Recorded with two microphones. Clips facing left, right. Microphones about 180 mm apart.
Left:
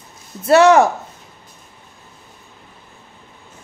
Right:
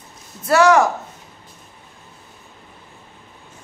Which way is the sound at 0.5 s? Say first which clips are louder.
Left 3 dB; 25° left (ahead or behind).